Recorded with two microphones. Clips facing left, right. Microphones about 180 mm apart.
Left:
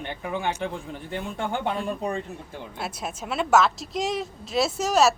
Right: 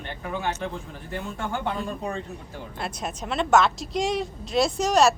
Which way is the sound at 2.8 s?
5° left (ahead or behind).